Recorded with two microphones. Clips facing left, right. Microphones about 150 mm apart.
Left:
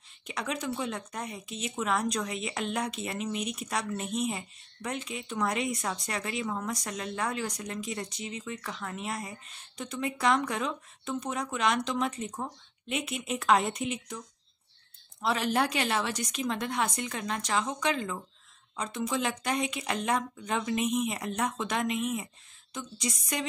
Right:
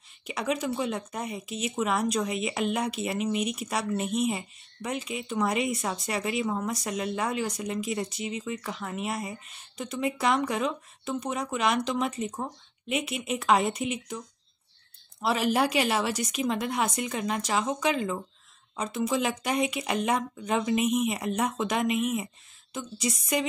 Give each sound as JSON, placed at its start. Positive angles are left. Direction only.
{"t": 0.3, "sound": "a woman's voice", "side_deg": -5}